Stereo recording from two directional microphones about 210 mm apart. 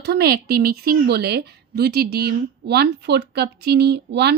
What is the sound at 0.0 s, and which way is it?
A woman's voice, 50° right (ahead or behind).